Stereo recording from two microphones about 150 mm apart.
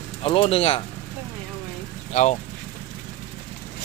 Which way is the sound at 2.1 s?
50° left (ahead or behind).